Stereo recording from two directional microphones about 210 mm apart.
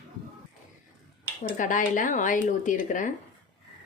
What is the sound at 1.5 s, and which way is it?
A woman's voice, 40° left (ahead or behind).